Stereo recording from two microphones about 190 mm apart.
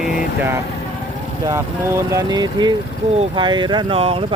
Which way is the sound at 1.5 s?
15° right (ahead or behind).